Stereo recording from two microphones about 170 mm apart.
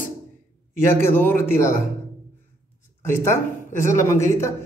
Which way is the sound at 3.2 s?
15° left (ahead or behind).